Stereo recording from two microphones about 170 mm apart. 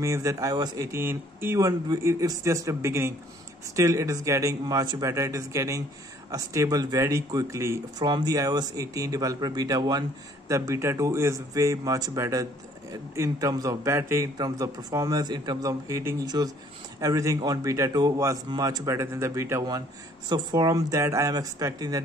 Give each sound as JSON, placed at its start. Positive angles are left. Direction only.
{"t": 0.0, "sound": "speech", "side_deg": -15}